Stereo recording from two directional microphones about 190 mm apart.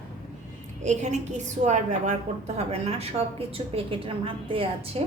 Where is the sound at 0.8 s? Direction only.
35° right (ahead or behind).